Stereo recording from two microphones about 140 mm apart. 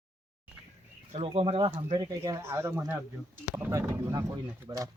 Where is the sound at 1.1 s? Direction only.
45° right (ahead or behind).